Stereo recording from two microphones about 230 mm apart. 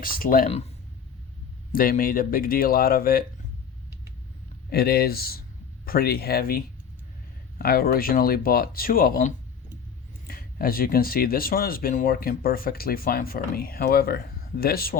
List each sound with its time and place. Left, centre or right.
0.0 s speech: left
1.7 s speech: left
4.7 s speech: left
7.6 s speech: left